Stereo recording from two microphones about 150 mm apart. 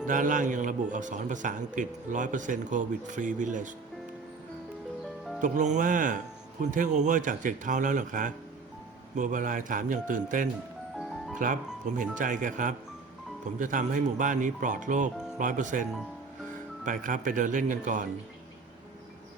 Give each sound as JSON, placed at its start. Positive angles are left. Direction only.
{"t": 0.1, "sound": "a man's voice", "side_deg": -60}
{"t": 5.4, "sound": "a man's voice", "side_deg": -55}